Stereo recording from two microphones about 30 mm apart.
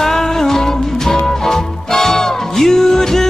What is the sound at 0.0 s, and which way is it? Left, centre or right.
Music, centre.